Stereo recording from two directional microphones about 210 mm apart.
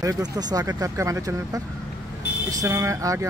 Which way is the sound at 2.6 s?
15° right (ahead or behind).